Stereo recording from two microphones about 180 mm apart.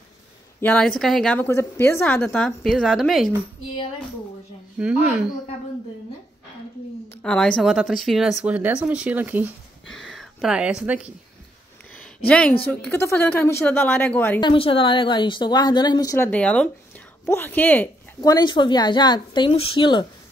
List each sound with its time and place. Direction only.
0.6 s a woman's voice: 10° left (ahead or behind)
4.7 s speech: 5° right (ahead or behind)
7.2 s speech: 5° left (ahead or behind); by 9.5 s 10° right (ahead or behind)
9.8 s speech: centre (ahead or behind)
12.3 s a woman's voice: 5° left (ahead or behind)
14.4 s speech: 30° left (ahead or behind)